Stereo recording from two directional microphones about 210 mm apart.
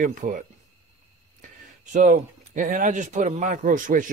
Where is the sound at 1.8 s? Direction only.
35° right (ahead or behind).